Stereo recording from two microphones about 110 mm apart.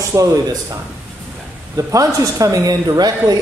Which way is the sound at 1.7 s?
30° right (ahead or behind).